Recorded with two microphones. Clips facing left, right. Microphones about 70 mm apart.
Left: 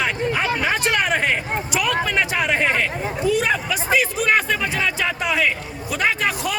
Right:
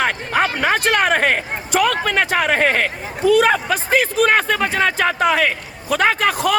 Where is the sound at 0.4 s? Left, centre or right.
Right.